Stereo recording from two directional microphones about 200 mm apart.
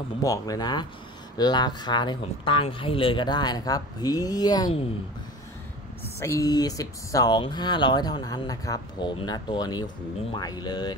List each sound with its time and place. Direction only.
0.2 s speech: 20° left (ahead or behind)
6.1 s speech: 15° left (ahead or behind)